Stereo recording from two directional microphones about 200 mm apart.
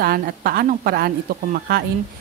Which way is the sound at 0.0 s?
50° right (ahead or behind).